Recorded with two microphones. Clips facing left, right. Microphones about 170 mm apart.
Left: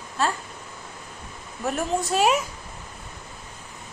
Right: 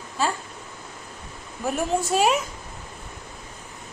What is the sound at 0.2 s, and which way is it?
Speech, centre (ahead or behind).